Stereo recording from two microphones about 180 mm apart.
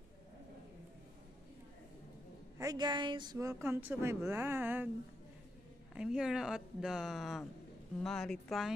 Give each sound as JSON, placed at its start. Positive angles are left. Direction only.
{"t": 2.6, "sound": "a woman's voice", "side_deg": -20}
{"t": 5.9, "sound": "speech", "side_deg": -5}